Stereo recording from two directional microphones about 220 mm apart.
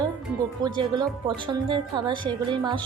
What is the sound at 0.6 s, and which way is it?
Speech, 20° right (ahead or behind).